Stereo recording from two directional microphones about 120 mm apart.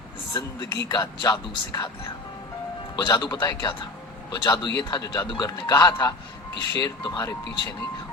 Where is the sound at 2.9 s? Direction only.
35° left (ahead or behind).